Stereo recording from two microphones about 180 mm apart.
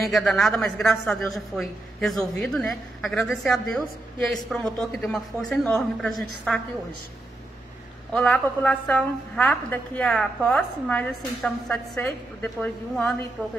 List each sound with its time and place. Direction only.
0.0 s a woman's voice: centre (ahead or behind)
8.1 s a woman's voice: 5° left (ahead or behind)